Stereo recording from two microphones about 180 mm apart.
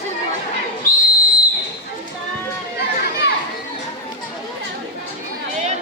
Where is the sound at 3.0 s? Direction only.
65° left (ahead or behind).